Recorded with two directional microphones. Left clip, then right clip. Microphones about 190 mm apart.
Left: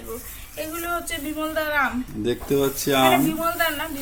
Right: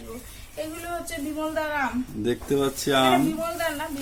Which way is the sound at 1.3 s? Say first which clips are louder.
Left 4 dB; 10° left (ahead or behind).